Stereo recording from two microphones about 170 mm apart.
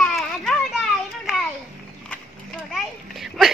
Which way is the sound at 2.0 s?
5° left (ahead or behind).